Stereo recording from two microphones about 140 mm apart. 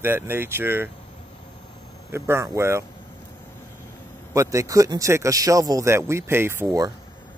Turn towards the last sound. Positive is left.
turn(degrees=-20)  # may be behind; listen again after turning